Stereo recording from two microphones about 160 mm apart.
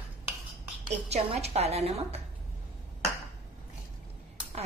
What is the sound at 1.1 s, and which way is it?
A woman's voice, 40° right (ahead or behind).